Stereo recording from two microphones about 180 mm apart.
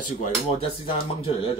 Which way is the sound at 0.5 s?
30° left (ahead or behind).